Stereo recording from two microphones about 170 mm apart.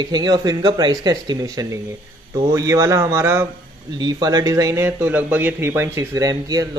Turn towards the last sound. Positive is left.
turn(degrees=-20)  # may be behind; listen again after turning